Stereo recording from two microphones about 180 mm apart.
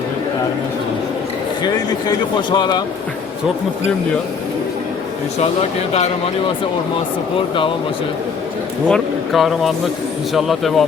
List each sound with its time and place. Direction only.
1.6 s a man's voice: 25° left (ahead or behind)
7.3 s a man's voice: 30° left (ahead or behind)
8.9 s speech: centre (ahead or behind)